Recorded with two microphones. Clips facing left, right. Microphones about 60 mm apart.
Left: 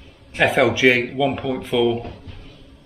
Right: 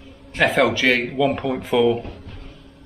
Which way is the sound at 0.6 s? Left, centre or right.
Centre.